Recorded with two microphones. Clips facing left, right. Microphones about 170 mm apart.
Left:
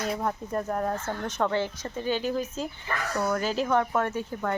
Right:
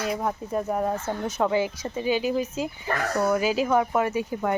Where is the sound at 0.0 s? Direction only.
5° right (ahead or behind).